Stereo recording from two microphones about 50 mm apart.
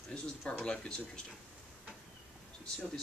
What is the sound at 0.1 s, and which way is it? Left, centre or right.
Speech, centre.